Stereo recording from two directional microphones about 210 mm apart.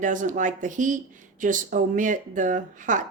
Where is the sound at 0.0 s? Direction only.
40° right (ahead or behind).